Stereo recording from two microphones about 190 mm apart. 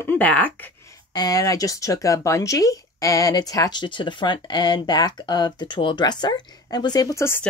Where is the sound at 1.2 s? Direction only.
20° left (ahead or behind).